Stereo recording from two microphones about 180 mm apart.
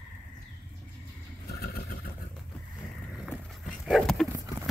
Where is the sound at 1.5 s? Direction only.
60° left (ahead or behind).